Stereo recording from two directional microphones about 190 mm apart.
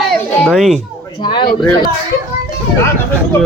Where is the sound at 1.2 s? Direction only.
25° left (ahead or behind).